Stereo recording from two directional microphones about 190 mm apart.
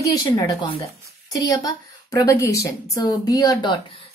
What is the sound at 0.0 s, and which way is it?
A woman's voice, 20° left (ahead or behind).